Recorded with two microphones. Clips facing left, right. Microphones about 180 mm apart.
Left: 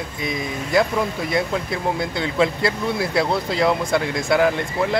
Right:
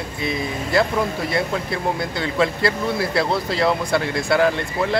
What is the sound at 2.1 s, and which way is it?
Speech, 20° left (ahead or behind).